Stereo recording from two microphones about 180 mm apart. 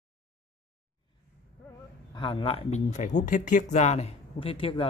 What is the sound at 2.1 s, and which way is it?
Speech, 25° left (ahead or behind).